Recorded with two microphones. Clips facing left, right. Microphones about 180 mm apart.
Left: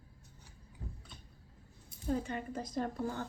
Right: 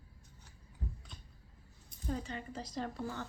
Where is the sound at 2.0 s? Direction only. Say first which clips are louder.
Left 4 dB; 50° left (ahead or behind).